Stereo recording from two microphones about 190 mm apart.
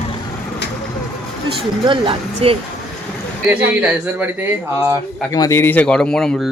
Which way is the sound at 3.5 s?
10° right (ahead or behind).